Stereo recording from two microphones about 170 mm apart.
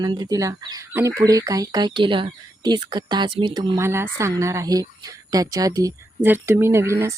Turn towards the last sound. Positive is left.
turn(degrees=-15)  # may be behind; listen again after turning